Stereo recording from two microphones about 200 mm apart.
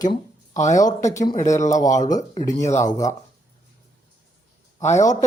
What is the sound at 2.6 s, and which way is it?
Speech, 35° left (ahead or behind).